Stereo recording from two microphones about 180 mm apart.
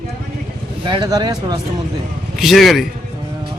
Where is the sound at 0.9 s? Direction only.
25° right (ahead or behind).